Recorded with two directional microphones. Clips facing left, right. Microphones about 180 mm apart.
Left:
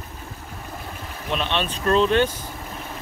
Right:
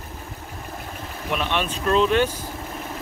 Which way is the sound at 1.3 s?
20° left (ahead or behind).